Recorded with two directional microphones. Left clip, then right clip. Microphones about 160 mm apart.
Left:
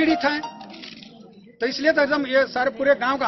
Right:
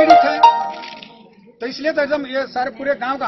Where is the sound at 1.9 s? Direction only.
10° left (ahead or behind).